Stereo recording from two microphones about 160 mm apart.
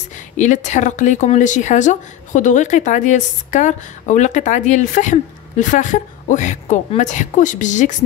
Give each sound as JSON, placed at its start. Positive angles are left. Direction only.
{"t": 0.4, "sound": "speech", "side_deg": 50}